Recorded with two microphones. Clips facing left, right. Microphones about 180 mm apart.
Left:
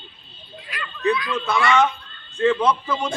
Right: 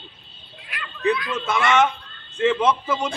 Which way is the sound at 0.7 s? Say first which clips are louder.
Even; 55° right (ahead or behind).